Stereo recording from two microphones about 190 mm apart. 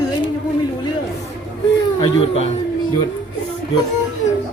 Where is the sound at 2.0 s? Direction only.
30° left (ahead or behind).